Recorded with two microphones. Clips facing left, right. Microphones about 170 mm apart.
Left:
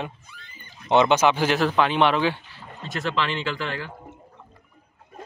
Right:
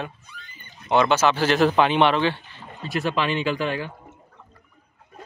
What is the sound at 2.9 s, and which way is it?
Speech, 15° right (ahead or behind).